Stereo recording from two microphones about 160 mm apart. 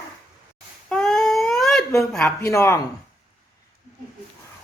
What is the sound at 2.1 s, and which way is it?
Speech, 5° left (ahead or behind).